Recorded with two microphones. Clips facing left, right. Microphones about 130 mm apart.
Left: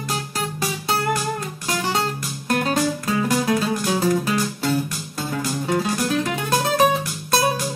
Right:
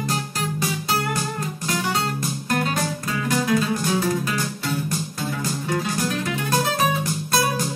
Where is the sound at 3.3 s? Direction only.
30° left (ahead or behind).